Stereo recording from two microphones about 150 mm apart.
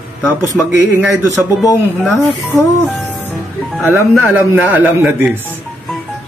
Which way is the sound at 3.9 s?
10° right (ahead or behind).